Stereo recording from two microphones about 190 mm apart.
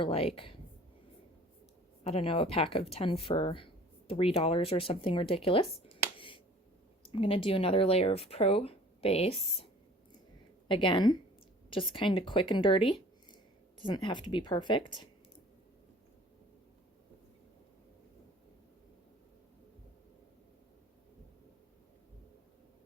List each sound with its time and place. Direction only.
0.0 s speech: 30° left (ahead or behind)
2.0 s speech: 30° left (ahead or behind)
6.1 s finger snapping: 25° left (ahead or behind)
7.1 s speech: 30° left (ahead or behind)
10.7 s speech: 25° left (ahead or behind)